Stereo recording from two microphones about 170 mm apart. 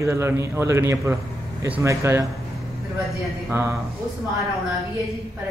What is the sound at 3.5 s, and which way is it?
Speech, 15° right (ahead or behind).